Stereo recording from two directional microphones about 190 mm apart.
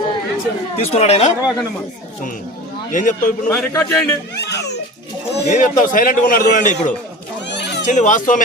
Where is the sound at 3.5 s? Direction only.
10° left (ahead or behind).